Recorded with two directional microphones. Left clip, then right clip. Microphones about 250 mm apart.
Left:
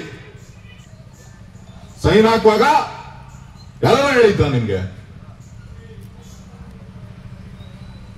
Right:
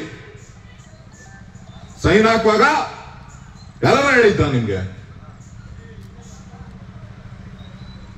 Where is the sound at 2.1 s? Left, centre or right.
Left.